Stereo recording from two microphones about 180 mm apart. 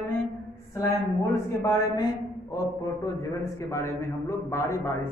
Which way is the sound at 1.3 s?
15° left (ahead or behind).